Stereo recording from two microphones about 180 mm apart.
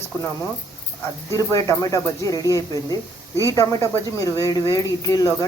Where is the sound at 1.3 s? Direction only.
15° left (ahead or behind).